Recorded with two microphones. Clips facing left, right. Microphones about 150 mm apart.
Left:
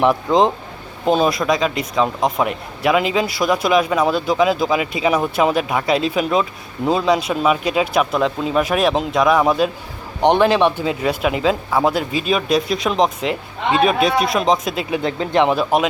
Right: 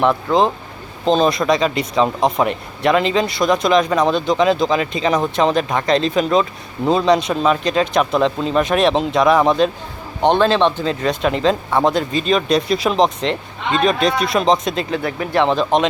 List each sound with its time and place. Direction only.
0.0 s speech: 15° left (ahead or behind)
1.0 s speech: 5° left (ahead or behind)
10.2 s speech: 15° left (ahead or behind)